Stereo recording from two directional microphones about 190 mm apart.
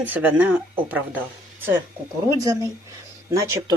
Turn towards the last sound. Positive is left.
turn(degrees=-15)  # may be behind; listen again after turning